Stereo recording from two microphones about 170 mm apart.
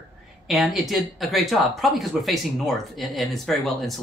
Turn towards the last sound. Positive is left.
turn(degrees=0)  # may be behind; listen again after turning